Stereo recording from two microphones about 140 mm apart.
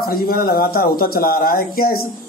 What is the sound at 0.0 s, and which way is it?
Speech, 90° left.